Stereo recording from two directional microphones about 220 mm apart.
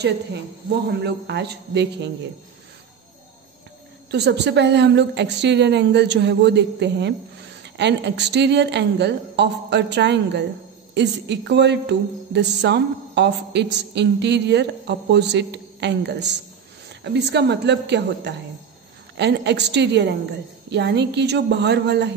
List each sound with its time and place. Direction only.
1.0 s a woman's voice: 50° right (ahead or behind)
4.1 s a woman's voice: 50° right (ahead or behind)